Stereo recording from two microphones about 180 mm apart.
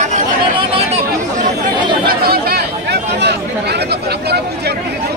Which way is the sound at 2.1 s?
60° right (ahead or behind).